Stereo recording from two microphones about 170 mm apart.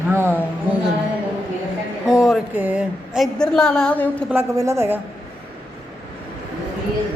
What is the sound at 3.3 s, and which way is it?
Speech, 5° left (ahead or behind).